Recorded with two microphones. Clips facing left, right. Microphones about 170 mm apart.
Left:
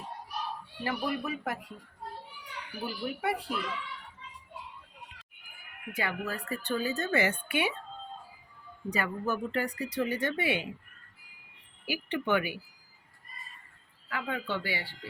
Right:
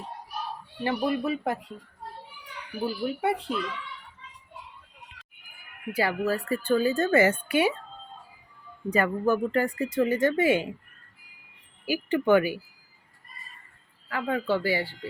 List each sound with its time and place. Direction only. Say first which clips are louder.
0.9 s speech: right 6 dB; 30° right (ahead or behind)
2.8 s speech: right 6 dB; 25° right (ahead or behind)
5.9 s speech: right 8 dB; 35° right (ahead or behind)
8.9 s speech: right 8 dB; 50° right (ahead or behind)
11.9 s speech: right 8 dB; 45° right (ahead or behind)
14.1 s speech: right 7 dB; 40° right (ahead or behind)